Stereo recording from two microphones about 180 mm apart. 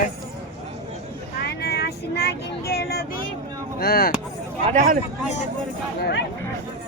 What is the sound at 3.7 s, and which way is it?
Speech, 55° left (ahead or behind).